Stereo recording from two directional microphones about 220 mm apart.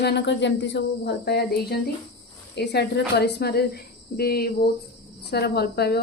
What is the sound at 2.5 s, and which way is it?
A woman's voice, 50° left (ahead or behind).